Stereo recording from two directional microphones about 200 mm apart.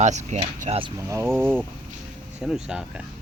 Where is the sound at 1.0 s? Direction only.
15° right (ahead or behind).